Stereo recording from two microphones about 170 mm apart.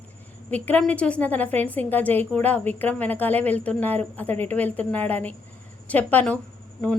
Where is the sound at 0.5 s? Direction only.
10° left (ahead or behind).